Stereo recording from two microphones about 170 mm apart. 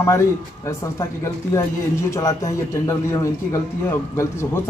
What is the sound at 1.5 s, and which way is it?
A man's voice, 20° left (ahead or behind).